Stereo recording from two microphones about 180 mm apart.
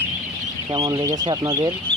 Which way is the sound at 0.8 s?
20° right (ahead or behind).